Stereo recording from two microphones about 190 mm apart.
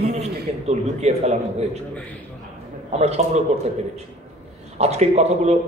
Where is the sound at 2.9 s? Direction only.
35° right (ahead or behind).